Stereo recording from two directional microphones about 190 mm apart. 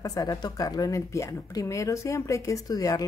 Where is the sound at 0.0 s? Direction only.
20° left (ahead or behind).